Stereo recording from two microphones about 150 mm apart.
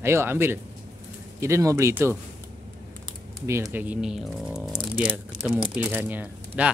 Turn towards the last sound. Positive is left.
turn(degrees=-10)  # may be behind; listen again after turning